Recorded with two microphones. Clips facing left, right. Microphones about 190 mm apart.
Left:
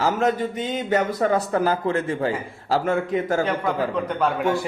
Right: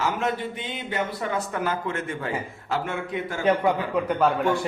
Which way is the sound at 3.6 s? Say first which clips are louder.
Even; 5° right (ahead or behind).